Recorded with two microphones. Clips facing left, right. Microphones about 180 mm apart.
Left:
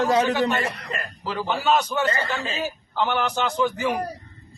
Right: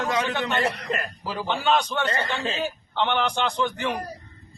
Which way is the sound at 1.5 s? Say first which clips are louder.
Left 1 dB; 5° left (ahead or behind).